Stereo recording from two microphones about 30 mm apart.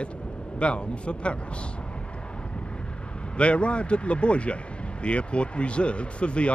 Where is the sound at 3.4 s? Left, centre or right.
Left.